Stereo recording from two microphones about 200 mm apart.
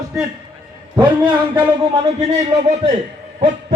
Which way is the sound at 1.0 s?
20° right (ahead or behind).